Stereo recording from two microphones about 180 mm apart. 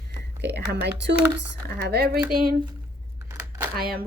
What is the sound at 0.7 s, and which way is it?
A woman's voice, 65° right (ahead or behind).